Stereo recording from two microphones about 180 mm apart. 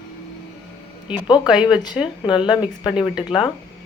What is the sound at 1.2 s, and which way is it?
Speech, 25° left (ahead or behind).